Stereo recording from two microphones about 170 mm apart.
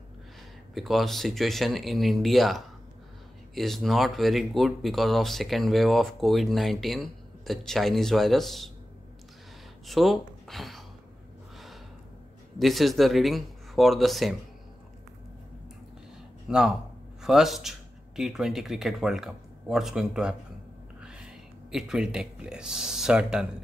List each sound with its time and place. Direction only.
0.7 s speech: centre (ahead or behind)
9.8 s speech: centre (ahead or behind)
11.5 s gasp: centre (ahead or behind)
12.5 s speech: centre (ahead or behind)
16.4 s speech: 5° right (ahead or behind)